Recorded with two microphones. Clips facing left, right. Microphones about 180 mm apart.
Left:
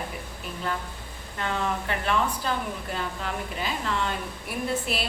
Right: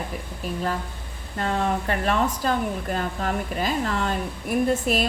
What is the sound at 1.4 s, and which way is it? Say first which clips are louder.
A woman's voice: right 4 dB; 40° right (ahead or behind).